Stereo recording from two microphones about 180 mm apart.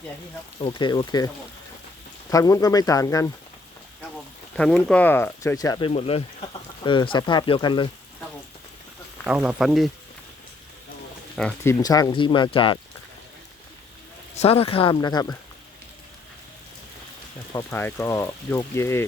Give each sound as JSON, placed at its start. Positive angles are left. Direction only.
{"t": 0.6, "sound": "speech", "side_deg": 25}
{"t": 2.3, "sound": "speech", "side_deg": 20}
{"t": 4.5, "sound": "speech", "side_deg": 5}
{"t": 5.9, "sound": "speech", "side_deg": 35}
{"t": 9.2, "sound": "speech", "side_deg": -10}
{"t": 11.6, "sound": "speech", "side_deg": 15}
{"t": 14.3, "sound": "speech", "side_deg": 35}
{"t": 17.5, "sound": "speech", "side_deg": 15}